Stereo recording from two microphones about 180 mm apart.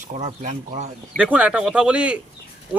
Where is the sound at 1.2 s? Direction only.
5° right (ahead or behind).